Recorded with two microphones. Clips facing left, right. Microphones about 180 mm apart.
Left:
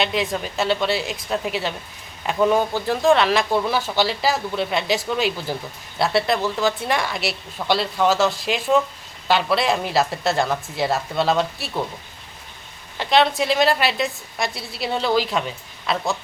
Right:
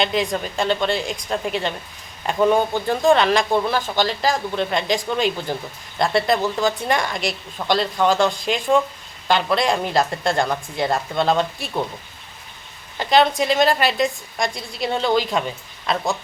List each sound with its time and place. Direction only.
0.0 s a woman's voice: 5° left (ahead or behind)
13.0 s a woman's voice: centre (ahead or behind)